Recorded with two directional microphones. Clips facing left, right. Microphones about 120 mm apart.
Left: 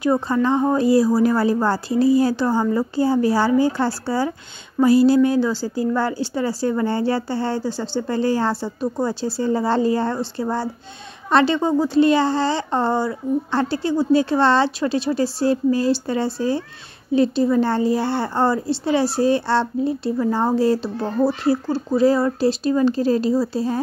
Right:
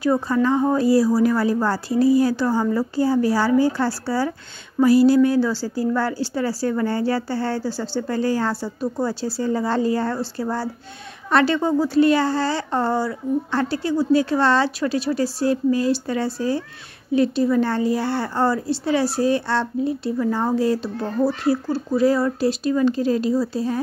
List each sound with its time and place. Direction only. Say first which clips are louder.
0.0 s a woman's voice: even; 20° left (ahead or behind)